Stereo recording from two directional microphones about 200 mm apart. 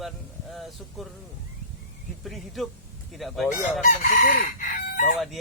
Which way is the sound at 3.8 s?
40° left (ahead or behind).